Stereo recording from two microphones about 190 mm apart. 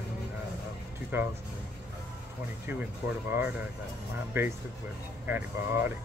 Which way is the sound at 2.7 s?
10° right (ahead or behind).